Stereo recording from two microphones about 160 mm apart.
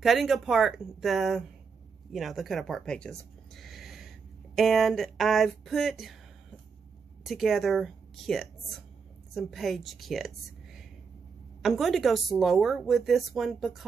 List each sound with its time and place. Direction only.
0.0 s speech: centre (ahead or behind)
7.2 s a woman's voice: centre (ahead or behind)